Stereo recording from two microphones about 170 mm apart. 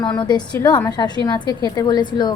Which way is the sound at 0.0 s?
25° left (ahead or behind).